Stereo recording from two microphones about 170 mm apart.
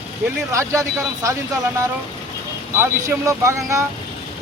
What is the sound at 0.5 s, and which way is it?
Speech, 15° right (ahead or behind).